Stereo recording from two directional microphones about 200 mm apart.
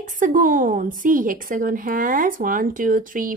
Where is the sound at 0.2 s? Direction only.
40° right (ahead or behind).